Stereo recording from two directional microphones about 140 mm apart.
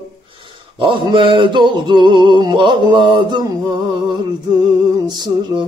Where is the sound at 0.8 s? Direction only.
35° right (ahead or behind).